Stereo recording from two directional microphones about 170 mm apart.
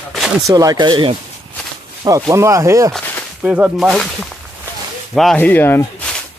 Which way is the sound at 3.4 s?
5° right (ahead or behind).